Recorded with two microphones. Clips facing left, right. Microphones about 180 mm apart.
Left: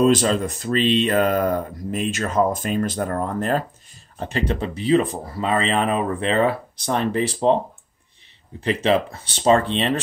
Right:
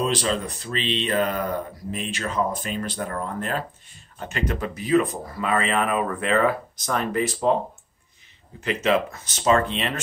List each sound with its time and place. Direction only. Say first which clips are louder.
0.0 s speech: left 7 dB; 45° left (ahead or behind); by 7.3 s 30° left (ahead or behind)
8.5 s speech: left 3 dB; 30° left (ahead or behind)